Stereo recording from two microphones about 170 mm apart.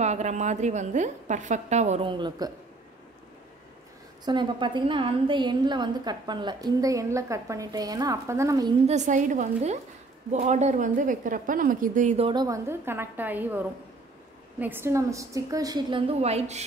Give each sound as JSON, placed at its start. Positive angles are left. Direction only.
{"t": 0.0, "sound": "a woman's voice", "side_deg": -40}
{"t": 2.0, "sound": "a woman's voice", "side_deg": -25}
{"t": 4.2, "sound": "a woman's voice", "side_deg": -25}
{"t": 8.8, "sound": "a woman's voice", "side_deg": -45}
{"t": 12.3, "sound": "a woman's voice", "side_deg": -20}
{"t": 16.2, "sound": "a woman's voice", "side_deg": -40}